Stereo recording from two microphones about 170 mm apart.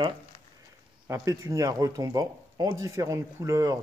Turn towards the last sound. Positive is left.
turn(degrees=-20)  # may be behind; listen again after turning